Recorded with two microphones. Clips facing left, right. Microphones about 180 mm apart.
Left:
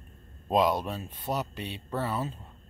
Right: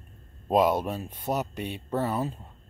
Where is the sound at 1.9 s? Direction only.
15° right (ahead or behind).